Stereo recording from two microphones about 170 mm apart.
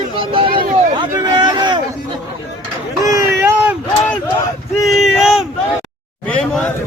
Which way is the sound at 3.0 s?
15° right (ahead or behind).